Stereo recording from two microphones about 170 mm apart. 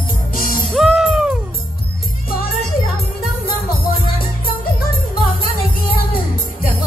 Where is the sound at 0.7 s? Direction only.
Centre (ahead or behind).